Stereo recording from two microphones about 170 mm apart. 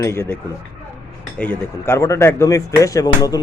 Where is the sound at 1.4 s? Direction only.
10° left (ahead or behind).